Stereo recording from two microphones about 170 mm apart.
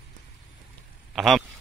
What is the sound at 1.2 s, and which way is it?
Speech, centre (ahead or behind).